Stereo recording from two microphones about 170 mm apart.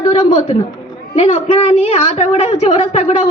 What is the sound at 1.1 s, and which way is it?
A woman's voice, 40° left (ahead or behind).